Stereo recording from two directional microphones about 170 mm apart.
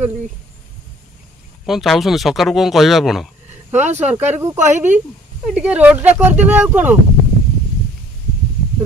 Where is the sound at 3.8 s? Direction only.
40° right (ahead or behind).